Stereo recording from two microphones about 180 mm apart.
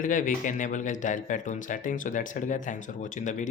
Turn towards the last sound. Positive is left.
turn(degrees=45)  # may be behind; listen again after turning